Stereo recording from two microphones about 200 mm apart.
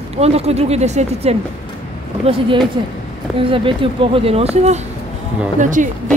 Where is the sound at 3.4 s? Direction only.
25° right (ahead or behind).